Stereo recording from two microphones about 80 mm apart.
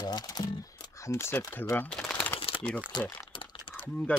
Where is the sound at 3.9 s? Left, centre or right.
Centre.